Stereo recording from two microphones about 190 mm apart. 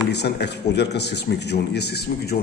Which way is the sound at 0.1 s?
60° left (ahead or behind).